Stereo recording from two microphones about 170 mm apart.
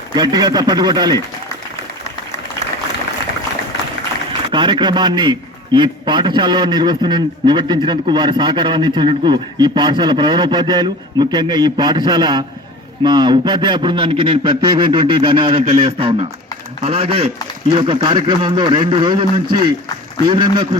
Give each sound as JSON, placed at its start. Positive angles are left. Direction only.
{"t": 0.1, "sound": "a man's voice", "side_deg": -25}
{"t": 4.5, "sound": "a man's voice", "side_deg": -25}
{"t": 16.8, "sound": "a man's voice", "side_deg": -35}